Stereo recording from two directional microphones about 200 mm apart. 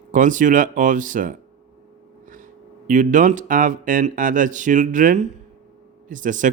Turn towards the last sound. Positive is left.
turn(degrees=-40)  # may be behind; listen again after turning